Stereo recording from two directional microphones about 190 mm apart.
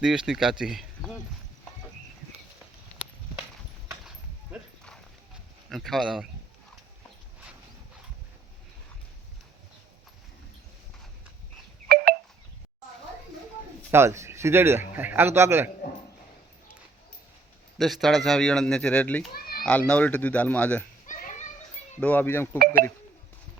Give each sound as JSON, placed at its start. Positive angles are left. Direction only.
{"t": 0.0, "sound": "speech", "side_deg": -5}
{"t": 5.6, "sound": "speech", "side_deg": 0}
{"t": 11.9, "sound": "a sound", "side_deg": -55}
{"t": 13.9, "sound": "a man's voice", "side_deg": -15}
{"t": 17.7, "sound": "speech", "side_deg": 0}
{"t": 19.3, "sound": "children playing", "side_deg": 50}
{"t": 19.9, "sound": "speech", "side_deg": 5}
{"t": 21.1, "sound": "children playing", "side_deg": 40}
{"t": 22.0, "sound": "speech", "side_deg": 10}
{"t": 22.5, "sound": "speech", "side_deg": -50}